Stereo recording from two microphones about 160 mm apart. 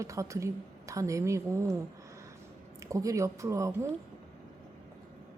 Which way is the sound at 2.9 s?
20° right (ahead or behind).